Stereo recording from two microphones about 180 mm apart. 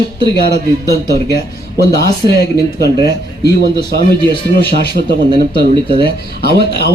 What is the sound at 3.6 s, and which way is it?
Speech, 65° right (ahead or behind).